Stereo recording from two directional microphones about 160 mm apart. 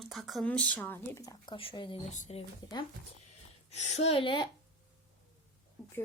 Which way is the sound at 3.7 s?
45° left (ahead or behind).